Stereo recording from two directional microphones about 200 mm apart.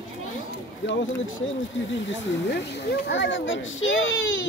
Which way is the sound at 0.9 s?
65° left (ahead or behind).